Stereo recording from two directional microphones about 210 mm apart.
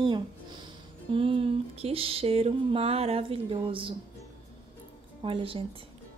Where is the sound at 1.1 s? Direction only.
25° right (ahead or behind).